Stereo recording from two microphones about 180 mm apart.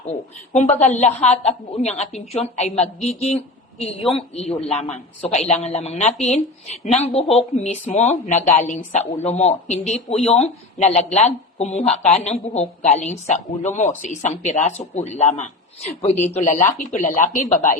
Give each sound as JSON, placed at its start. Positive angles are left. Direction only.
{"t": 0.5, "sound": "a woman's voice", "side_deg": 40}